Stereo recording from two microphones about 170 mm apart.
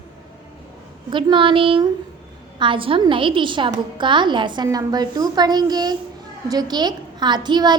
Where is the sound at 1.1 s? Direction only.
30° right (ahead or behind).